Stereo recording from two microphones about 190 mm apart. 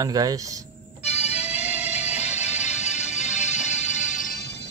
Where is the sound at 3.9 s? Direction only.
45° left (ahead or behind).